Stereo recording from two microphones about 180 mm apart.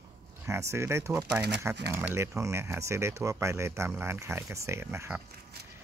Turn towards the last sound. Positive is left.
turn(degrees=-10)  # may be behind; listen again after turning